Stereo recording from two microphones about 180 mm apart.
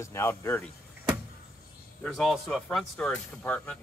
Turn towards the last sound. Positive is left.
turn(degrees=10)  # may be behind; listen again after turning